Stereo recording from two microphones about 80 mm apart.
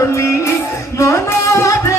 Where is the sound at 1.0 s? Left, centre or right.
Left.